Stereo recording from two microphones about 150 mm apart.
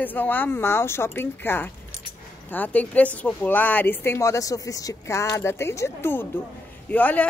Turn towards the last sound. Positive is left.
turn(degrees=10)  # may be behind; listen again after turning